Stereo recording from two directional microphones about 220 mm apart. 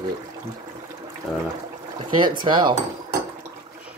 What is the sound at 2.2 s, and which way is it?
Speech, 20° right (ahead or behind).